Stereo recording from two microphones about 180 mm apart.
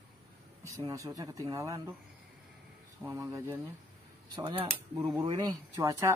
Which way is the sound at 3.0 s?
20° right (ahead or behind).